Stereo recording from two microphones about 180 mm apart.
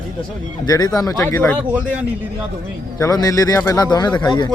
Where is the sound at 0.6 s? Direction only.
20° left (ahead or behind).